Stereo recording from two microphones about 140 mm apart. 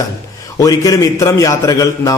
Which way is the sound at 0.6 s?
25° left (ahead or behind).